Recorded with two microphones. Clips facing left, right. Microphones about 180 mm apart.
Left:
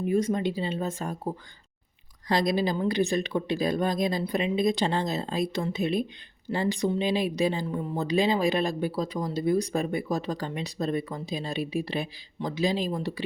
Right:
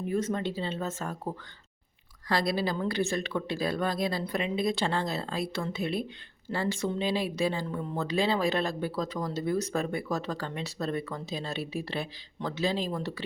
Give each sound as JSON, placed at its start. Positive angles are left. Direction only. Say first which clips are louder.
{"t": 0.0, "sound": "speech", "louder": "left 4 dB", "side_deg": 15}